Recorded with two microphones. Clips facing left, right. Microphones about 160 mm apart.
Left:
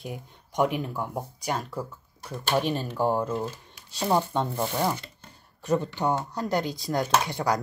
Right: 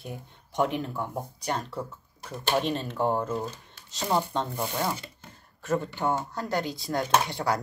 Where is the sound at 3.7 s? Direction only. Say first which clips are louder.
Left 3 dB; 10° left (ahead or behind).